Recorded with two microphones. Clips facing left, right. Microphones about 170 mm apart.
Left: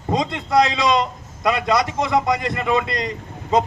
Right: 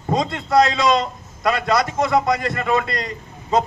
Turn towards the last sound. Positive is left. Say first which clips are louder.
# left 1 dB
turn(degrees=20)  # may be behind; listen again after turning